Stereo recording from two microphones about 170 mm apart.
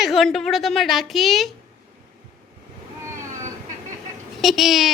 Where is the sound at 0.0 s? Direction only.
Centre (ahead or behind).